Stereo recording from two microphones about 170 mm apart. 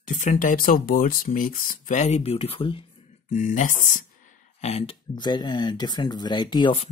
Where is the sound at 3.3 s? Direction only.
50° left (ahead or behind).